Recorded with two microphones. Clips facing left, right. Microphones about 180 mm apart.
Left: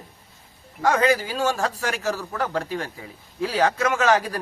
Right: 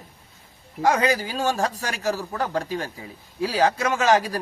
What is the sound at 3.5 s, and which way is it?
Speech, 35° right (ahead or behind).